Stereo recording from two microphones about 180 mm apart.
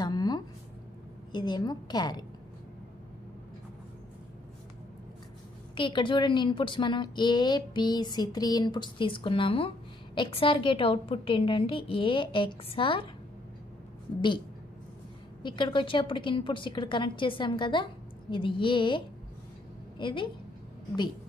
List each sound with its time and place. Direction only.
0.0 s a sound: 20° left (ahead or behind)
1.3 s a woman's voice: 25° left (ahead or behind)
5.8 s a woman's voice: 25° left (ahead or behind)
15.4 s a woman's voice: 25° left (ahead or behind)